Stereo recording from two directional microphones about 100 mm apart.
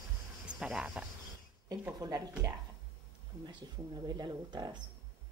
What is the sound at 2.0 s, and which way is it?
Speech, 35° right (ahead or behind).